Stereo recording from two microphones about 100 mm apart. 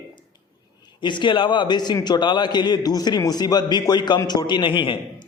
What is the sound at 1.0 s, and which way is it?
A man's voice, 50° left (ahead or behind).